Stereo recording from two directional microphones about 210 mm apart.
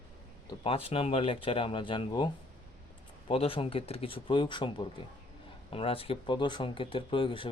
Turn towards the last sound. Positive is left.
turn(degrees=25)  # may be behind; listen again after turning